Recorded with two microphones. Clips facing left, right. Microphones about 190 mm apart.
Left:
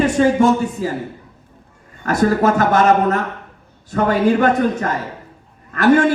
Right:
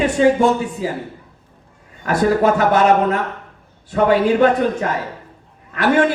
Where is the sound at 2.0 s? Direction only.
45° left (ahead or behind).